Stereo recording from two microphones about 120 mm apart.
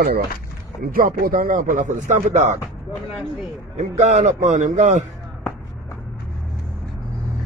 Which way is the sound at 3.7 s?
75° right (ahead or behind).